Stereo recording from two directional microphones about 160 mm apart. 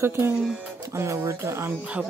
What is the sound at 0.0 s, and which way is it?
Speech, 15° right (ahead or behind).